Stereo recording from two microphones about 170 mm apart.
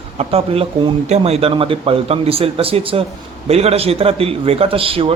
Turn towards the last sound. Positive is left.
turn(degrees=-35)  # may be behind; listen again after turning